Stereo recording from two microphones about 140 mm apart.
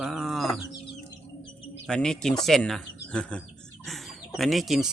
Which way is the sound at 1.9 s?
5° left (ahead or behind).